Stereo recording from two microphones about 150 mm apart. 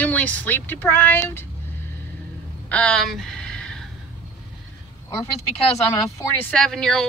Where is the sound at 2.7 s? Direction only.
5° left (ahead or behind).